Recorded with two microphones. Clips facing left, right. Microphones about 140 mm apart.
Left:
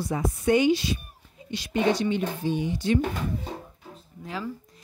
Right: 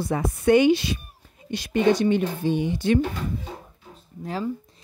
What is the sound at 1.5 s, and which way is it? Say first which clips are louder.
Speech: right 4 dB; 50° right (ahead or behind).